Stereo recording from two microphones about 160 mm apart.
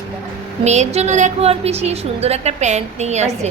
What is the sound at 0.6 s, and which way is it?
A woman's voice, 45° right (ahead or behind).